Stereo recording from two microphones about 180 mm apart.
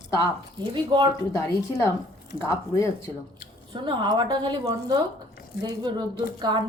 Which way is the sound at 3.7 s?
25° right (ahead or behind).